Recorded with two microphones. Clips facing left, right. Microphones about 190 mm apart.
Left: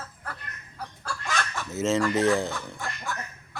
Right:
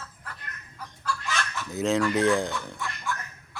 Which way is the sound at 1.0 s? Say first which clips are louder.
Right 1 dB; 50° left (ahead or behind).